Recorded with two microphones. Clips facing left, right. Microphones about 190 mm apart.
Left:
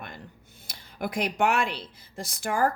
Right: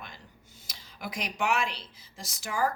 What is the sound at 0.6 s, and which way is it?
A woman's voice, 55° left (ahead or behind).